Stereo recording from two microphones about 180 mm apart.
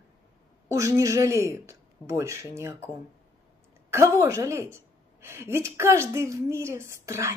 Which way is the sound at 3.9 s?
15° right (ahead or behind).